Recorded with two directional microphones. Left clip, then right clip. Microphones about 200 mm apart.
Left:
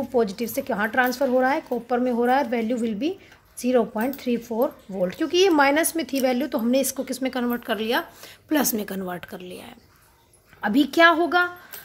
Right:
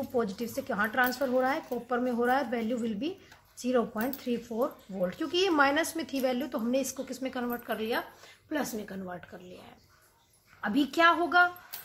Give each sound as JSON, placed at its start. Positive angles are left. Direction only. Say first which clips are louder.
{"t": 0.1, "sound": "speech", "louder": "left 9 dB", "side_deg": 30}
{"t": 10.6, "sound": "speech", "louder": "left 8 dB", "side_deg": 30}